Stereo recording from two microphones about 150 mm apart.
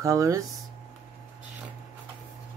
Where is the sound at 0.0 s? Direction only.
20° right (ahead or behind).